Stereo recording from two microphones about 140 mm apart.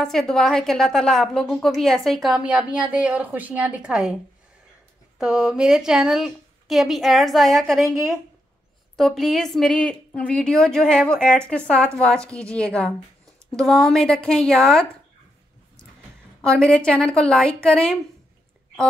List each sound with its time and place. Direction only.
0.0 s a woman's voice: 5° left (ahead or behind)
5.2 s a woman's voice: 5° right (ahead or behind)
16.3 s a woman's voice: 5° left (ahead or behind)